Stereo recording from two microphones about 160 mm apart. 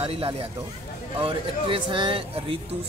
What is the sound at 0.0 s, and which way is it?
Speech, 35° right (ahead or behind).